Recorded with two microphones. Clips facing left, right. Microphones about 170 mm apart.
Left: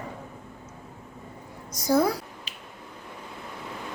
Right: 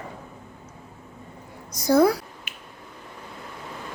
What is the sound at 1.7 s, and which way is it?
Speech, 70° right (ahead or behind).